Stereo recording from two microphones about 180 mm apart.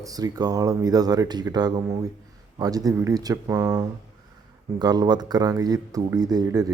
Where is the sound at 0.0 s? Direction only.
20° right (ahead or behind).